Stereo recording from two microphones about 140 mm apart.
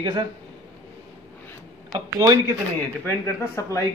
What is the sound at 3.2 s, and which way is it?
Speech, 20° left (ahead or behind).